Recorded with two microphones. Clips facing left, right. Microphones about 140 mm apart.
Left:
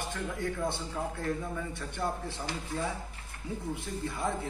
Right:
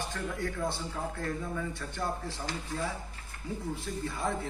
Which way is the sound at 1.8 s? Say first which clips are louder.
Left 1 dB; 20° left (ahead or behind).